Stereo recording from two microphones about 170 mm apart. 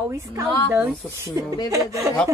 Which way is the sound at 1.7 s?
20° right (ahead or behind).